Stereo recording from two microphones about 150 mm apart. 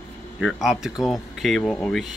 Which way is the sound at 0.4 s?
Centre (ahead or behind).